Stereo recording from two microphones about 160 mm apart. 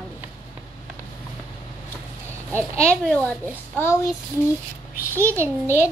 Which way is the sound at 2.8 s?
5° left (ahead or behind).